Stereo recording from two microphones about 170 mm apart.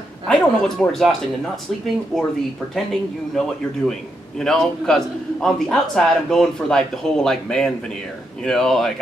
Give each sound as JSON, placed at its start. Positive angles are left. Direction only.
{"t": 0.3, "sound": "a man's voice", "side_deg": 5}